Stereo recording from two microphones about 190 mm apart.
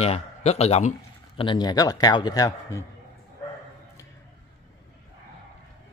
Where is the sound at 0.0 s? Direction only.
35° left (ahead or behind); by 2.8 s 20° left (ahead or behind).